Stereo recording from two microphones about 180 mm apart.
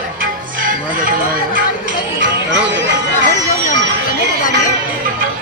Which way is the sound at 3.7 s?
45° left (ahead or behind).